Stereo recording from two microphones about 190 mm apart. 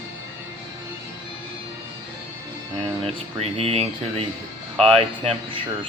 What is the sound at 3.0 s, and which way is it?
Speech, 30° right (ahead or behind).